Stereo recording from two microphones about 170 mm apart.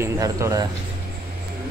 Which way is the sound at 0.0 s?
20° right (ahead or behind).